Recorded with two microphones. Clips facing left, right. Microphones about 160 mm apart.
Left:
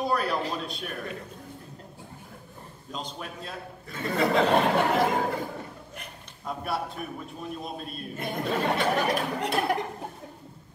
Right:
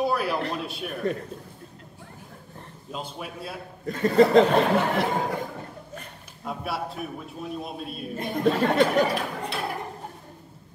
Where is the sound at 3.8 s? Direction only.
45° right (ahead or behind).